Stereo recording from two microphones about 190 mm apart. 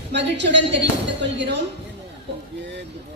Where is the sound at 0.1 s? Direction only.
65° right (ahead or behind).